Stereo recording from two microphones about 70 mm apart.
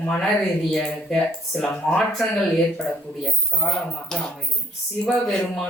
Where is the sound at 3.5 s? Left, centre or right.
Centre.